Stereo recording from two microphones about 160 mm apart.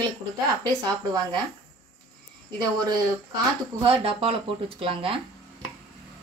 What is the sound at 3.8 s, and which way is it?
Speech, 35° right (ahead or behind).